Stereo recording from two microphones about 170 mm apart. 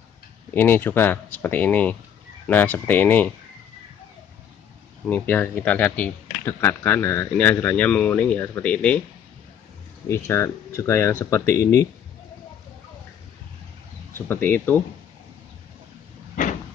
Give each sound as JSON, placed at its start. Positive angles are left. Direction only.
{"t": 0.6, "sound": "speech", "side_deg": 10}
{"t": 5.0, "sound": "speech", "side_deg": 10}
{"t": 10.0, "sound": "a man's voice", "side_deg": 15}
{"t": 14.1, "sound": "speech", "side_deg": 10}